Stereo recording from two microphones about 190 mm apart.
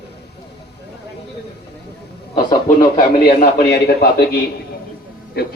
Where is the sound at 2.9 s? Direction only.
50° left (ahead or behind).